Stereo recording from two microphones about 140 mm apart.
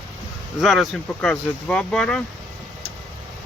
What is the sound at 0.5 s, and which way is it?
Speech, centre (ahead or behind).